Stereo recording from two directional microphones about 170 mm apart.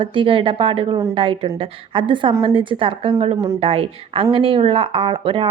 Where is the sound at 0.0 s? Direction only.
30° right (ahead or behind).